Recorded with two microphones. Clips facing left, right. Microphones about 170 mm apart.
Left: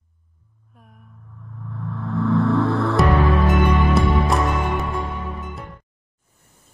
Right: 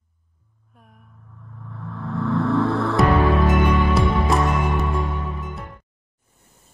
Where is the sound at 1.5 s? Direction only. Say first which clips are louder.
Left 4 dB; centre (ahead or behind).